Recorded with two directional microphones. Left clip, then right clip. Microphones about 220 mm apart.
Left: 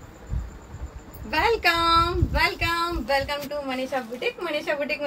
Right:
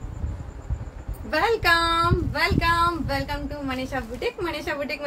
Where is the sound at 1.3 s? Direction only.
15° right (ahead or behind).